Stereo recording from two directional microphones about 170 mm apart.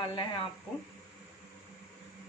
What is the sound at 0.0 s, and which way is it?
Speech, 30° left (ahead or behind).